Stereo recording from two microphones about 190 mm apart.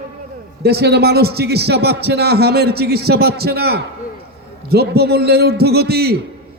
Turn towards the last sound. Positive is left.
turn(degrees=-55)  # may be behind; listen again after turning